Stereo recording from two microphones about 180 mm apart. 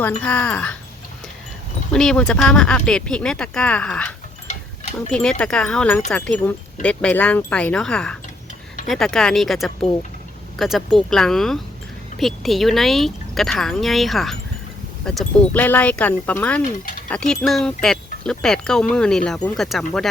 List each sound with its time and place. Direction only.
0.0 s speech: 5° left (ahead or behind)
1.9 s speech: 5° left (ahead or behind)
4.4 s mechanisms: 40° left (ahead or behind)
5.1 s speech: 5° left (ahead or behind)